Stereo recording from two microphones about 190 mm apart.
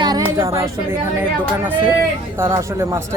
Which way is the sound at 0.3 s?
15° right (ahead or behind).